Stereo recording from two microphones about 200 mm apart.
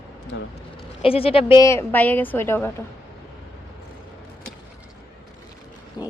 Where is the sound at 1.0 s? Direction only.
30° left (ahead or behind).